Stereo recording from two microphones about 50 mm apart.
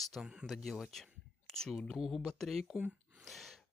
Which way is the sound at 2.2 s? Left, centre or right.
Centre.